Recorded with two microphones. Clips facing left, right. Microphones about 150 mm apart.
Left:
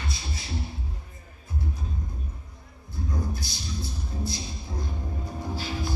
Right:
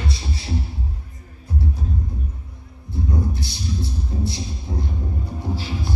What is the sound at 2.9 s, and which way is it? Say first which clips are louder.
Music: right 7 dB; 25° right (ahead or behind).